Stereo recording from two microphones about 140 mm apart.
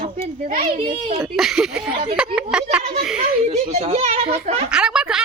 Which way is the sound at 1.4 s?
5° right (ahead or behind).